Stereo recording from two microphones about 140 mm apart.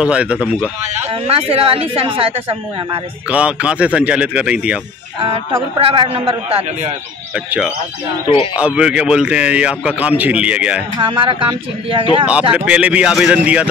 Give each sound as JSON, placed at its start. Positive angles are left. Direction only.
{"t": 0.0, "sound": "a man's voice", "side_deg": -10}
{"t": 0.9, "sound": "a man's voice", "side_deg": -45}
{"t": 3.3, "sound": "a man's voice", "side_deg": -10}
{"t": 5.2, "sound": "a man's voice", "side_deg": -40}
{"t": 7.3, "sound": "a man's voice", "side_deg": -10}
{"t": 11.0, "sound": "speech", "side_deg": -35}
{"t": 12.3, "sound": "a man's voice", "side_deg": -10}